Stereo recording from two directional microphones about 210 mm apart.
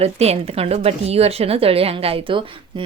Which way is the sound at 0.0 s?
30° right (ahead or behind).